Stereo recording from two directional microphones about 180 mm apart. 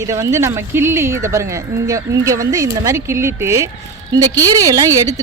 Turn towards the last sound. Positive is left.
turn(degrees=-20)  # may be behind; listen again after turning